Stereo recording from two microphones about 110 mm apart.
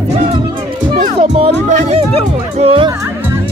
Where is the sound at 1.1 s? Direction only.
70° right (ahead or behind).